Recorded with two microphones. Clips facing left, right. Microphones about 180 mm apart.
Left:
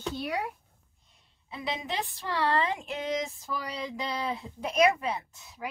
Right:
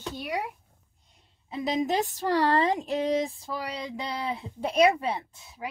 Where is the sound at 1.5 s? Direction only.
40° right (ahead or behind).